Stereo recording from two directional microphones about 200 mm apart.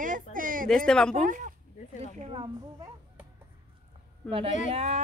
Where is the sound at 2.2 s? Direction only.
25° right (ahead or behind).